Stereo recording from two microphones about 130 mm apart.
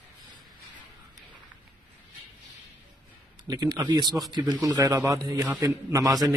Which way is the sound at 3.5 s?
30° right (ahead or behind).